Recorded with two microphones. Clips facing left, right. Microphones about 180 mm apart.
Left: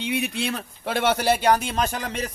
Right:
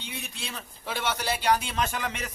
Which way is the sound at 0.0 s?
65° left (ahead or behind).